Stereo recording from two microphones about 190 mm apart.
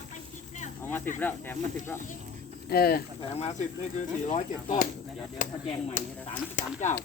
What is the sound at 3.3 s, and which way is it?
Speech, 35° left (ahead or behind).